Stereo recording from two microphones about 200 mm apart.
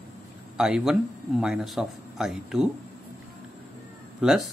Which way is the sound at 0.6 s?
5° right (ahead or behind).